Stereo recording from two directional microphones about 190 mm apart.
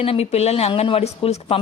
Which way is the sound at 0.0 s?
30° left (ahead or behind).